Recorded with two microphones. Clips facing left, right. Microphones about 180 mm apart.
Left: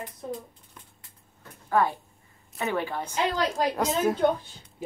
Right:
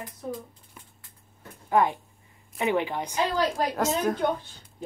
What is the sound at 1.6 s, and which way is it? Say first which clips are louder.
A woman's voice: right 1 dB; 20° right (ahead or behind).